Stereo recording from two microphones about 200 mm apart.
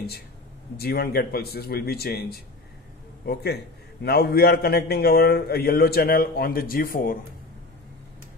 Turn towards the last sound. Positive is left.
turn(degrees=45)  # may be behind; listen again after turning